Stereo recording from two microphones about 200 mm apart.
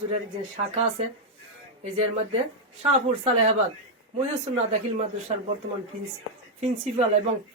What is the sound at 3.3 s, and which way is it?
Speech, 30° right (ahead or behind).